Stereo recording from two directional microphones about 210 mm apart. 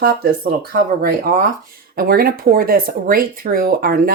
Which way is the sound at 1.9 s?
45° right (ahead or behind).